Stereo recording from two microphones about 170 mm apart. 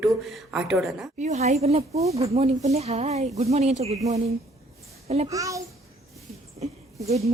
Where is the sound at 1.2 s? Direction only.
45° right (ahead or behind).